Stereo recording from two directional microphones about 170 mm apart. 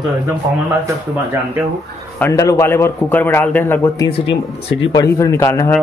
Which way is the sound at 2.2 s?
20° left (ahead or behind).